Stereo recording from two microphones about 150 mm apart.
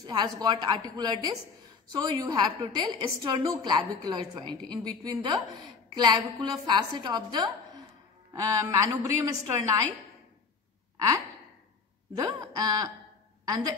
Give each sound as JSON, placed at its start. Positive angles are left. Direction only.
{"t": 0.0, "sound": "a woman's voice", "side_deg": -30}
{"t": 12.2, "sound": "a woman's voice", "side_deg": -25}